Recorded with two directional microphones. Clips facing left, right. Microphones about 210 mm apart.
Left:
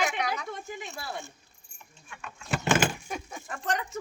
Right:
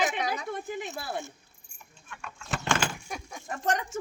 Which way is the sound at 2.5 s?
10° left (ahead or behind).